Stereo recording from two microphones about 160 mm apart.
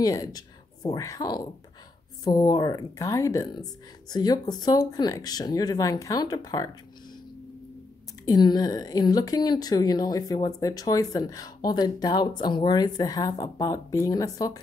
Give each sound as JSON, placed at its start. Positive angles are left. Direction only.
{"t": 0.0, "sound": "a woman's voice", "side_deg": 20}
{"t": 8.3, "sound": "a woman's voice", "side_deg": 25}